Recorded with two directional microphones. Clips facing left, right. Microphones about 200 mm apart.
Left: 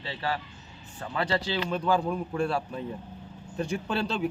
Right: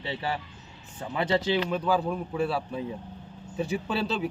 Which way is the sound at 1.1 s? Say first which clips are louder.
Right 3 dB; 20° right (ahead or behind).